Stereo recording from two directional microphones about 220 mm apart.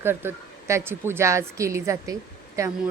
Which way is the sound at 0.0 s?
10° right (ahead or behind).